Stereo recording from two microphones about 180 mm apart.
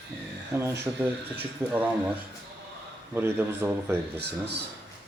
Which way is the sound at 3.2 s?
10° right (ahead or behind).